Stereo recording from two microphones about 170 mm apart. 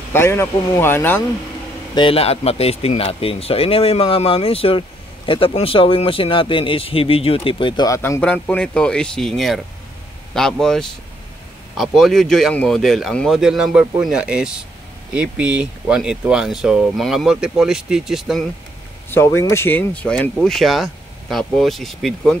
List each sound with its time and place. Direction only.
0.1 s speech: 15° left (ahead or behind)
2.0 s speech: 35° left (ahead or behind); by 8.2 s 20° left (ahead or behind)
8.2 s speech: 5° left (ahead or behind)
19.0 s speech: 15° left (ahead or behind)